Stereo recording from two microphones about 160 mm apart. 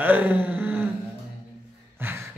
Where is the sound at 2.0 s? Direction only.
15° right (ahead or behind).